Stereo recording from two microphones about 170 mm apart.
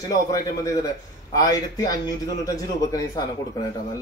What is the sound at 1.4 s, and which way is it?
Speech, 20° left (ahead or behind).